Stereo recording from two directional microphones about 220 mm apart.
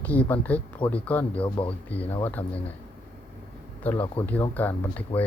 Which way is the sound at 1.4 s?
25° left (ahead or behind).